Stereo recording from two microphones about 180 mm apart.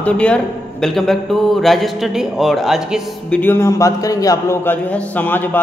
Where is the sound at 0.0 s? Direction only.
5° left (ahead or behind).